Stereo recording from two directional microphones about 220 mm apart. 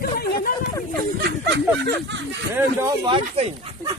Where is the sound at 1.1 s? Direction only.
50° right (ahead or behind).